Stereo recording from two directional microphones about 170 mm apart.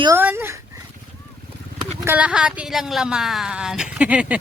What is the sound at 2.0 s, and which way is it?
Speech, 10° right (ahead or behind).